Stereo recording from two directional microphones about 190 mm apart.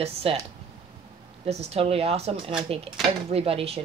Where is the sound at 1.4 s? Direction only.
35° right (ahead or behind).